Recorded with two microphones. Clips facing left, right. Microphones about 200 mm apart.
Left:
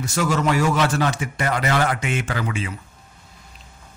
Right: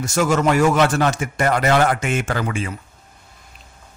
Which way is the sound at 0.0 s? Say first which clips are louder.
Right 4 dB; 45° right (ahead or behind).